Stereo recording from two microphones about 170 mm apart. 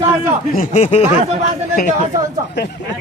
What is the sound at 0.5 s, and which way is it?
Speech, 50° left (ahead or behind).